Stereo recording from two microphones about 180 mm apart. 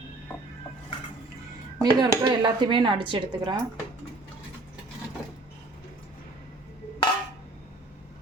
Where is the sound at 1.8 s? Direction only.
25° right (ahead or behind).